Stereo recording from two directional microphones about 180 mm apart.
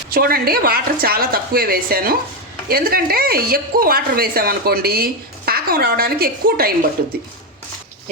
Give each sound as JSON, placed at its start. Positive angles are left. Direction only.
{"t": 0.1, "sound": "speech", "side_deg": -55}